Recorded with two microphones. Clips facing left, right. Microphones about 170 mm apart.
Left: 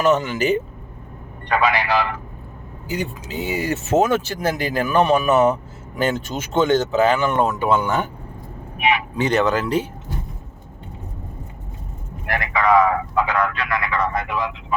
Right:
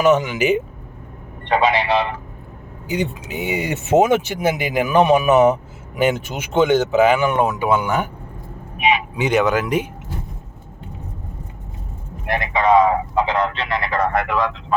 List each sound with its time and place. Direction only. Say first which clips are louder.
0.0 s speech: right 2 dB; 15° right (ahead or behind)
1.5 s speech: right 2 dB; 25° right (ahead or behind)
12.2 s speech: right 2 dB; 20° right (ahead or behind)
14.0 s speech: right 4 dB; 65° right (ahead or behind); by 14.8 s 90° right